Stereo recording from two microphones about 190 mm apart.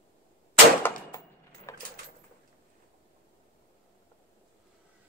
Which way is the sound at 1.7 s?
15° left (ahead or behind).